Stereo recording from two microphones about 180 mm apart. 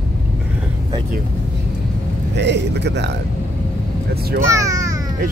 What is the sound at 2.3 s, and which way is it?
Speech, 70° right (ahead or behind).